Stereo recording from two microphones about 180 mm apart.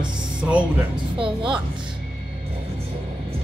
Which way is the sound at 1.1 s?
30° right (ahead or behind).